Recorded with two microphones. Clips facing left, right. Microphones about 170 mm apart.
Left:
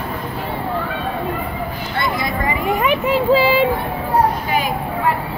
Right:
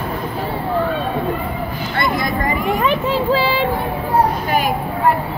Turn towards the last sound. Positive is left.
turn(degrees=15)  # may be behind; listen again after turning